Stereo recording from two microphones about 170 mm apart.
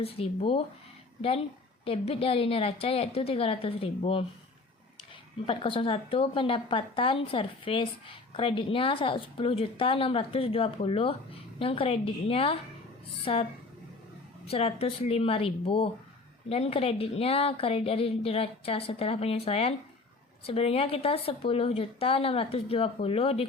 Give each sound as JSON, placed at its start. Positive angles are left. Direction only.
{"t": 0.0, "sound": "a woman's voice", "side_deg": 35}
{"t": 5.5, "sound": "a woman's voice", "side_deg": 30}
{"t": 14.4, "sound": "a woman's voice", "side_deg": 35}